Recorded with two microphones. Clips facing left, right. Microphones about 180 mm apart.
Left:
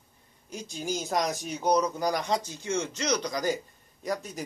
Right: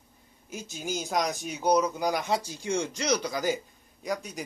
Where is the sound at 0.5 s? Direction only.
5° right (ahead or behind).